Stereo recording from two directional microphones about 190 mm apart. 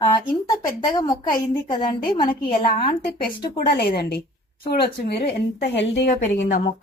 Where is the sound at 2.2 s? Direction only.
50° left (ahead or behind).